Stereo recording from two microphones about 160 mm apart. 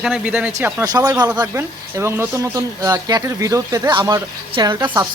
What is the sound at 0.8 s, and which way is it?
Speech, 20° right (ahead or behind).